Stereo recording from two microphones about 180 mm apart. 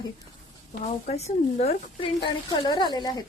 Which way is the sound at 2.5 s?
25° left (ahead or behind).